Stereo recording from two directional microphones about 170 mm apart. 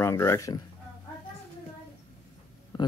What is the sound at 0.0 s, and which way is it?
Speech, 15° left (ahead or behind).